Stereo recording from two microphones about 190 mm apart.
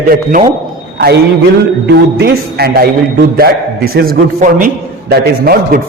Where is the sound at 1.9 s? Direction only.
60° right (ahead or behind).